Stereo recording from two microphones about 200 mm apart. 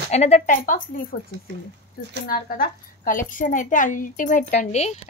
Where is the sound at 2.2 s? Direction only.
45° left (ahead or behind).